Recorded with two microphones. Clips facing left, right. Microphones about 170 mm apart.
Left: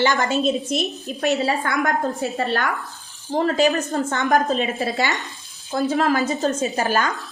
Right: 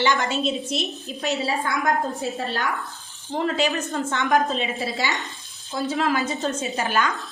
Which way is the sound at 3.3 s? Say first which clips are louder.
Left 5 dB; 40° left (ahead or behind).